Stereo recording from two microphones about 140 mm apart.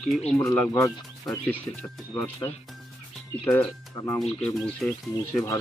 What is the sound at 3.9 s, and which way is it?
Speech, 25° left (ahead or behind).